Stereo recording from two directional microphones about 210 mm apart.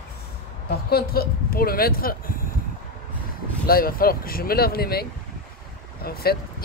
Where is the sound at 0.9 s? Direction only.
45° left (ahead or behind).